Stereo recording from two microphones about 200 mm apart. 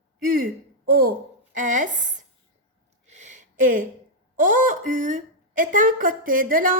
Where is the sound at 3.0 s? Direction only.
35° right (ahead or behind).